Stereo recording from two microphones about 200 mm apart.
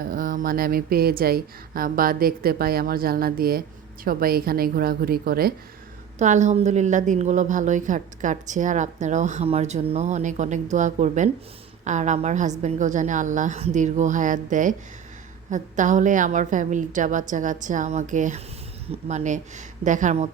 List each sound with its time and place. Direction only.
0.1 s speech: 45° right (ahead or behind)
6.1 s a woman's voice: 35° right (ahead or behind)